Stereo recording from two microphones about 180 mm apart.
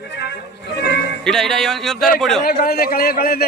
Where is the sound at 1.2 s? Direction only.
Centre (ahead or behind).